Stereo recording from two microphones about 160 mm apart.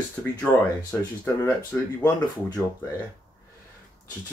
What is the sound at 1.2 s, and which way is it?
Speech, 15° left (ahead or behind).